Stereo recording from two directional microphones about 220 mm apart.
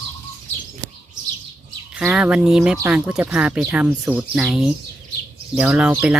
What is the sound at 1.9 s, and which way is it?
Speech, 5° right (ahead or behind).